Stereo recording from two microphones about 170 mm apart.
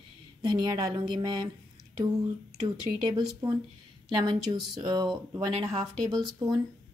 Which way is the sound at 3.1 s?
25° right (ahead or behind).